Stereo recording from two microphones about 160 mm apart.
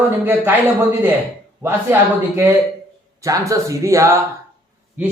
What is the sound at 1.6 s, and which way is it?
A man's voice, 15° right (ahead or behind).